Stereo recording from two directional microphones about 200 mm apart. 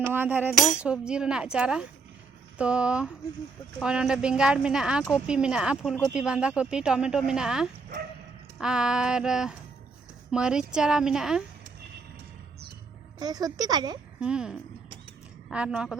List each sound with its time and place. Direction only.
0.1 s speech: 10° right (ahead or behind)
13.1 s speech: 20° right (ahead or behind)
14.2 s speech: 5° right (ahead or behind)